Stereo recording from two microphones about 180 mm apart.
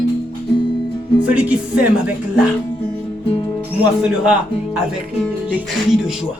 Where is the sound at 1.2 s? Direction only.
10° right (ahead or behind).